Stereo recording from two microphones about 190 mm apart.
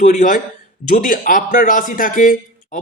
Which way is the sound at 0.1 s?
45° left (ahead or behind).